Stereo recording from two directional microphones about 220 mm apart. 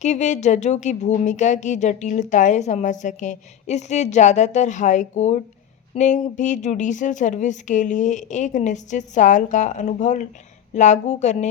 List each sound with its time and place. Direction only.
0.0 s speech: 30° left (ahead or behind)